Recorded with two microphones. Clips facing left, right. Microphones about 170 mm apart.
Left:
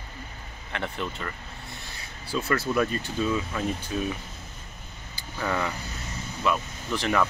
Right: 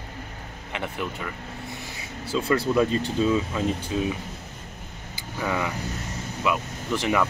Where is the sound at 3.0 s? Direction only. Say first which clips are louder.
Right 5 dB; 25° right (ahead or behind).